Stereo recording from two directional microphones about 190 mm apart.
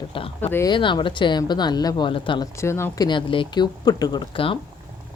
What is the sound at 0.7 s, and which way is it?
A woman's voice, 25° left (ahead or behind).